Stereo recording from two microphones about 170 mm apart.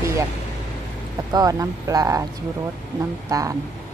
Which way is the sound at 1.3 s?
20° right (ahead or behind).